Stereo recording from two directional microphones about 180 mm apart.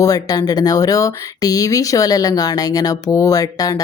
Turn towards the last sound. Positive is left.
turn(degrees=20)  # may be behind; listen again after turning